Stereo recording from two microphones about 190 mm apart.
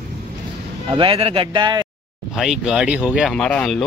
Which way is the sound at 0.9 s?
30° right (ahead or behind).